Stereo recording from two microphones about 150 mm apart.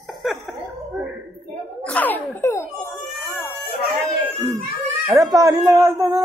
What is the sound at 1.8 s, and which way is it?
Speech, 10° left (ahead or behind).